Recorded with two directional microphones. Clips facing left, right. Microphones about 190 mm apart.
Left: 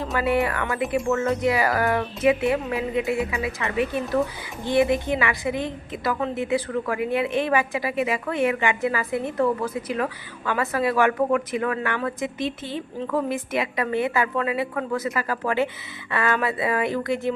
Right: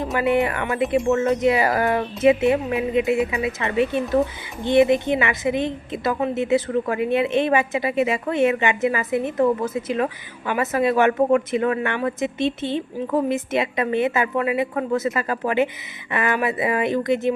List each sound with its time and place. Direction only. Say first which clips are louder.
0.0 s a woman's voice: right 3 dB; 20° right (ahead or behind)